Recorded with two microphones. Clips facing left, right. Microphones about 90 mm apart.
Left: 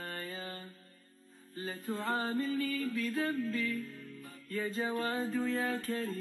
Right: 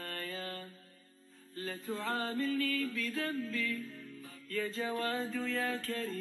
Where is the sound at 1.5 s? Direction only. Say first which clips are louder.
Left 1 dB; 10° left (ahead or behind).